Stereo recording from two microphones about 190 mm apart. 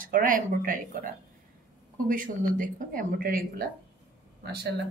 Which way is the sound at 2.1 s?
45° right (ahead or behind).